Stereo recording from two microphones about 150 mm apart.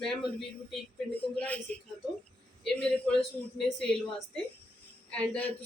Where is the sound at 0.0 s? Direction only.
Centre (ahead or behind).